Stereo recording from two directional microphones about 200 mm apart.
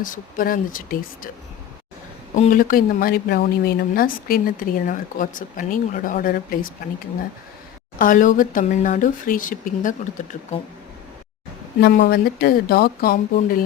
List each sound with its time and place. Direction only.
0.0 s speech: 45° left (ahead or behind)
2.3 s speech: 40° left (ahead or behind)
7.9 s speech: 40° left (ahead or behind)
11.8 s speech: 45° left (ahead or behind)